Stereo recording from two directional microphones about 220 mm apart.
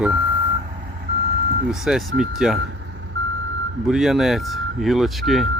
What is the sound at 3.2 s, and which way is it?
Reversing beeps, 55° right (ahead or behind).